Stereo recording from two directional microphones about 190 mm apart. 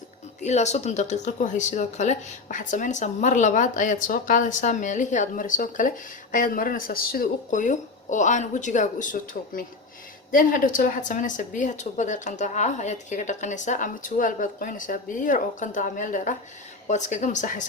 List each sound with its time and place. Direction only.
0.4 s a woman's voice: 35° left (ahead or behind)